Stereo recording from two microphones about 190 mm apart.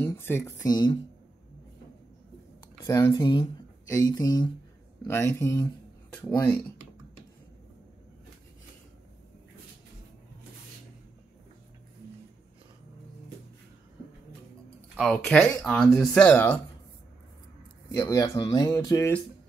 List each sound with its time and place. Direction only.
0.0 s speech: 10° left (ahead or behind)
2.8 s speech: 15° left (ahead or behind)
15.0 s speech: 5° left (ahead or behind)
17.9 s speech: 15° left (ahead or behind)